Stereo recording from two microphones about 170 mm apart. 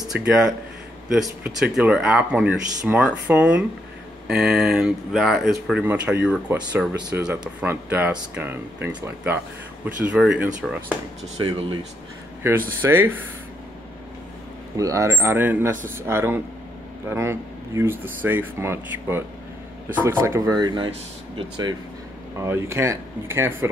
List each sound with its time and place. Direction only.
0.1 s speech: 5° right (ahead or behind)
11.3 s speech: 30° right (ahead or behind)
12.4 s speech: 15° right (ahead or behind)
14.8 s speech: 20° right (ahead or behind)